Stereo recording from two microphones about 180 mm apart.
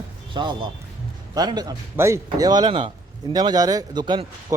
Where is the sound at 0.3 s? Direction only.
25° right (ahead or behind).